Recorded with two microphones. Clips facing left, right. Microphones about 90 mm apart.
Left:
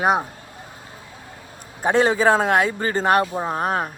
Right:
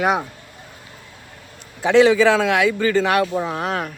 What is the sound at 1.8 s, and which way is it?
Speech, 45° left (ahead or behind).